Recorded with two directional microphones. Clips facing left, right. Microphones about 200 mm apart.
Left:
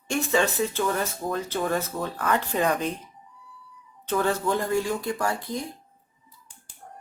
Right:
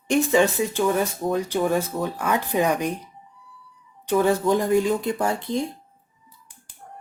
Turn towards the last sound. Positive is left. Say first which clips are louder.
# right 4 dB
turn(degrees=-25)  # may be behind; listen again after turning